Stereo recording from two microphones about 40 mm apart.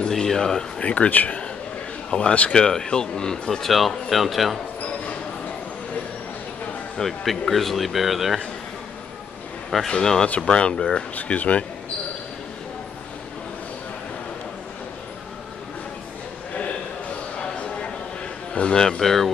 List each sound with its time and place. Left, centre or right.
0.1 s speech: centre
0.7 s speech: left
2.0 s a man's voice: left
3.6 s speech: centre
7.0 s speech: centre
9.8 s speech: centre
11.1 s speech: left
17.4 s a sound: left
18.5 s speech: left; by 19.3 s centre